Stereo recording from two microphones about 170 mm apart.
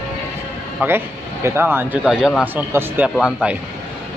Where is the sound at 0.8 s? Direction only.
15° right (ahead or behind).